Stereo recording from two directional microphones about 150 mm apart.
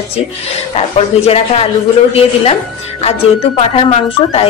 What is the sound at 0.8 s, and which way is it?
Speech, 40° left (ahead or behind).